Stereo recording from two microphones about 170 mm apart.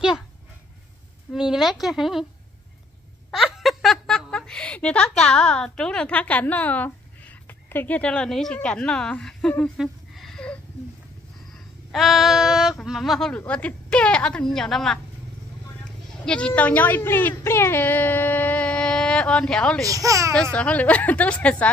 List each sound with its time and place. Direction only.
1.3 s a woman's voice: 5° right (ahead or behind)
3.3 s a woman's voice: centre (ahead or behind)
11.9 s a woman's voice: centre (ahead or behind)
16.3 s a woman's voice: 5° left (ahead or behind)
19.8 s speech: 20° right (ahead or behind)
20.5 s a woman's voice: 5° left (ahead or behind)